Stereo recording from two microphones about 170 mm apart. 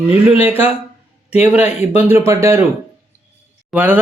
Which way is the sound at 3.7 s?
10° right (ahead or behind).